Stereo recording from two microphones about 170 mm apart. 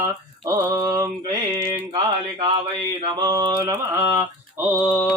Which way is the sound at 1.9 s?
30° right (ahead or behind).